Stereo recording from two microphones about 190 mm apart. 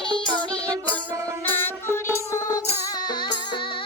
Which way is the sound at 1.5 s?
10° left (ahead or behind).